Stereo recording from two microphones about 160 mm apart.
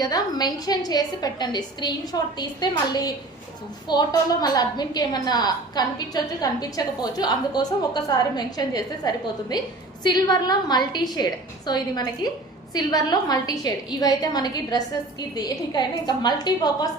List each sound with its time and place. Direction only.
0.0 s a woman's voice: 25° left (ahead or behind)